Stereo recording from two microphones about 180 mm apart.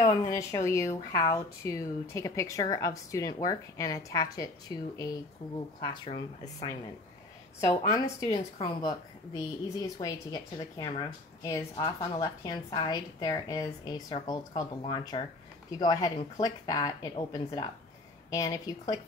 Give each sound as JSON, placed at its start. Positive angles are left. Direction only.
{"t": 0.0, "sound": "a woman's voice", "side_deg": 20}
{"t": 5.8, "sound": "speech", "side_deg": 35}
{"t": 7.6, "sound": "a woman's voice", "side_deg": 20}